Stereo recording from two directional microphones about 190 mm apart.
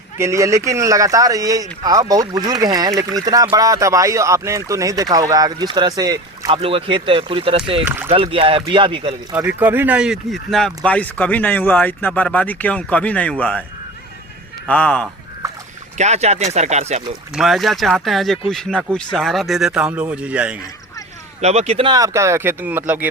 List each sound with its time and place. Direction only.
0.2 s speech: 15° right (ahead or behind)
7.9 s speech: 15° right (ahead or behind)
8.1 s speech: 30° right (ahead or behind)
9.6 s speech: 10° right (ahead or behind); by 13.7 s 5° left (ahead or behind)
14.7 s a man's voice: 5° left (ahead or behind)
16.0 s speech: 35° right (ahead or behind)
17.3 s a man's voice: centre (ahead or behind)
21.4 s speech: 35° right (ahead or behind)
21.9 s speech: 15° right (ahead or behind)